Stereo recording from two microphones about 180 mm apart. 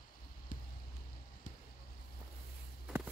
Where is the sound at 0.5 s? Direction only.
45° left (ahead or behind).